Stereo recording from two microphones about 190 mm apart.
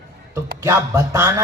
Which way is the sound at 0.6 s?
15° right (ahead or behind).